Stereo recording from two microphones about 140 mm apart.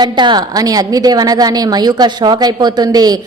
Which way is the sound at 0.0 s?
30° right (ahead or behind).